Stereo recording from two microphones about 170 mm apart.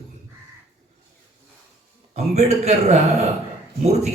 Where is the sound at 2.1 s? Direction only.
40° right (ahead or behind).